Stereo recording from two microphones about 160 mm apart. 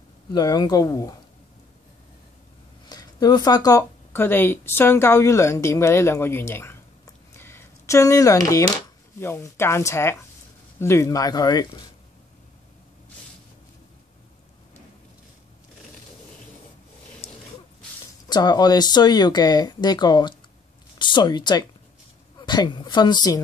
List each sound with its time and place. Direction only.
0.3 s speech: 25° left (ahead or behind)
2.9 s speech: 25° left (ahead or behind)
7.3 s a sound: 15° left (ahead or behind)
9.2 s speech: 15° left (ahead or behind)
17.2 s a sound: 35° left (ahead or behind)
18.3 s speech: 25° left (ahead or behind)